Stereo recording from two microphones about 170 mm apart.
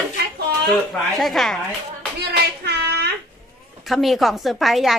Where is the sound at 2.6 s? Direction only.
75° right (ahead or behind).